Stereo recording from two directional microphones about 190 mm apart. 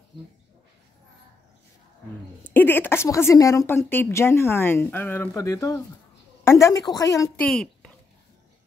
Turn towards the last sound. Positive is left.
turn(degrees=5)  # may be behind; listen again after turning